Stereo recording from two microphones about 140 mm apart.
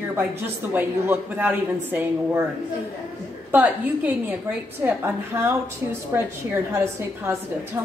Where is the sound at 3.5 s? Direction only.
10° right (ahead or behind).